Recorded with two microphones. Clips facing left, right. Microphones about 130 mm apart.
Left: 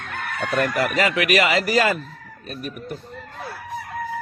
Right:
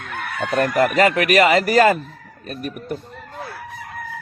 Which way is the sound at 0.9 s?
45° right (ahead or behind).